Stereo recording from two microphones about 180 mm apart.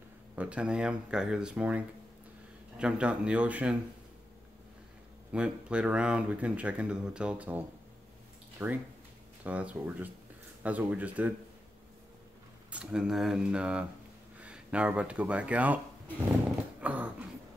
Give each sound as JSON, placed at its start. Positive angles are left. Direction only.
{"t": 0.4, "sound": "speech", "side_deg": -5}
{"t": 5.3, "sound": "speech", "side_deg": -5}
{"t": 12.7, "sound": "speech", "side_deg": -5}
{"t": 16.8, "sound": "a sound", "side_deg": -5}